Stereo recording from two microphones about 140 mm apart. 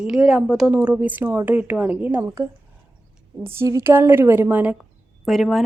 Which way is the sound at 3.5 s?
20° right (ahead or behind).